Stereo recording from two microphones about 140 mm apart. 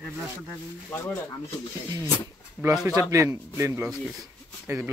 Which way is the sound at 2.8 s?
20° right (ahead or behind).